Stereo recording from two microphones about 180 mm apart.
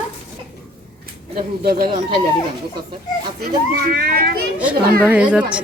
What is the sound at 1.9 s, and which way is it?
Speech, 25° right (ahead or behind).